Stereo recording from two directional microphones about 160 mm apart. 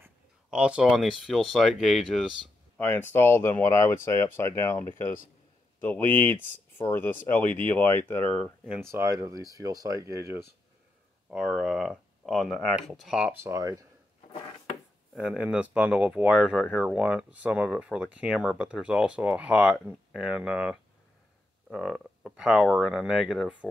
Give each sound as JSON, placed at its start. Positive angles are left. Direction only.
{"t": 0.0, "sound": "speech", "side_deg": -5}
{"t": 2.8, "sound": "speech", "side_deg": 15}
{"t": 8.9, "sound": "speech", "side_deg": -20}
{"t": 11.2, "sound": "speech", "side_deg": 0}
{"t": 13.3, "sound": "speech", "side_deg": -15}
{"t": 15.1, "sound": "speech", "side_deg": -5}